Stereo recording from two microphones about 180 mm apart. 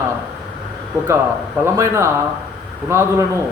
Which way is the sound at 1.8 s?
15° right (ahead or behind).